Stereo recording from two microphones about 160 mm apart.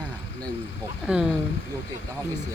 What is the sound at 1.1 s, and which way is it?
Speech, 5° right (ahead or behind).